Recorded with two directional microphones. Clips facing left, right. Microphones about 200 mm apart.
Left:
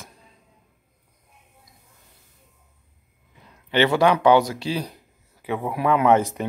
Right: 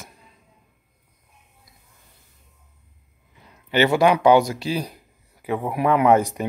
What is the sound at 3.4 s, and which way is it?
Speech, 10° right (ahead or behind).